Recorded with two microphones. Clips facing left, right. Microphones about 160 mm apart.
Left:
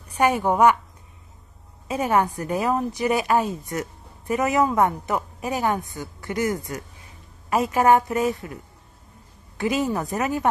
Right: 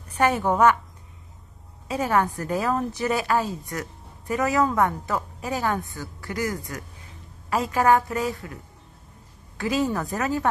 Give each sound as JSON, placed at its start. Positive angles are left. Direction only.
{"t": 0.2, "sound": "a woman's voice", "side_deg": 15}
{"t": 1.9, "sound": "a woman's voice", "side_deg": 20}
{"t": 9.6, "sound": "a woman's voice", "side_deg": 20}